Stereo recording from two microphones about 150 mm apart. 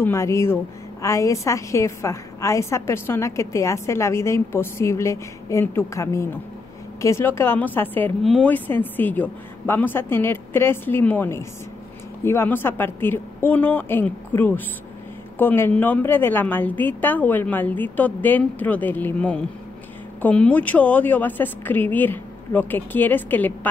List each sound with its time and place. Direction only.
0.0 s a woman's voice: 20° left (ahead or behind)